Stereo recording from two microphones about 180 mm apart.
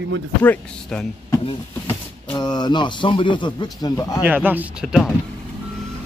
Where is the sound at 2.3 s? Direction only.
25° left (ahead or behind).